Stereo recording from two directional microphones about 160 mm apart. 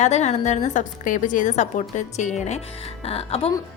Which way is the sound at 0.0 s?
45° left (ahead or behind).